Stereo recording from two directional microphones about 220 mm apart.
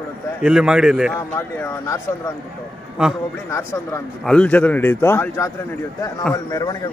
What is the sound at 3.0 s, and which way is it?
Speech, 5° right (ahead or behind).